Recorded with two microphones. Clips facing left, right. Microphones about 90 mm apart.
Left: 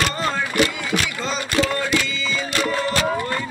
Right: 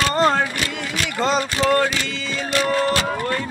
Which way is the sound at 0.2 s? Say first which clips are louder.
Right 6 dB; 55° right (ahead or behind).